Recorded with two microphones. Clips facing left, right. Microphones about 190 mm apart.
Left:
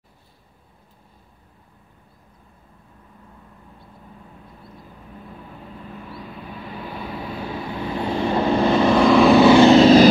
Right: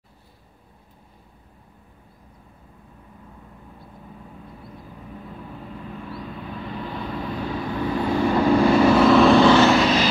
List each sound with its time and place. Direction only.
6.8 s vehicle: 10° left (ahead or behind)
7.9 s vehicle: 20° left (ahead or behind)
8.7 s vehicle: 5° right (ahead or behind); by 9.7 s 10° left (ahead or behind)
9.7 s vehicle: 30° left (ahead or behind)